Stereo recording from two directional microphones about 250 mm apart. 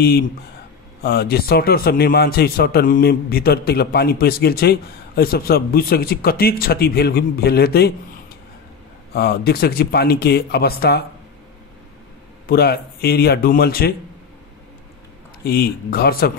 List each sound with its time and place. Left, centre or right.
1.0 s a man's voice: left
9.1 s a man's voice: left
12.4 s a man's voice: left
15.4 s a man's voice: left